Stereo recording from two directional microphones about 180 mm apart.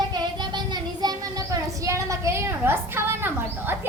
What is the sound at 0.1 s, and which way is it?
Child singing, 25° right (ahead or behind).